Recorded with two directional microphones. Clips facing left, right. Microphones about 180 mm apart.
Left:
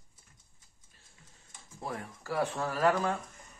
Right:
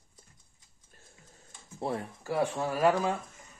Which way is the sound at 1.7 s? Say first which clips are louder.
Right 6 dB; 30° right (ahead or behind).